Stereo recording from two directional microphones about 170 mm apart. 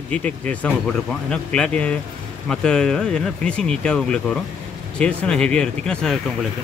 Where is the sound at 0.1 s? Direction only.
10° left (ahead or behind).